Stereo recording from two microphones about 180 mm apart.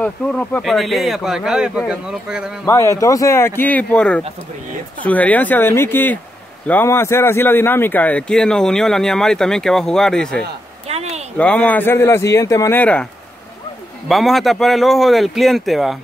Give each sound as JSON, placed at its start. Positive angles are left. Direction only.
{"t": 0.0, "sound": "speech", "side_deg": 5}
{"t": 2.6, "sound": "a man's voice", "side_deg": 15}
{"t": 10.9, "sound": "a sound", "side_deg": -35}
{"t": 11.3, "sound": "a man's voice", "side_deg": 10}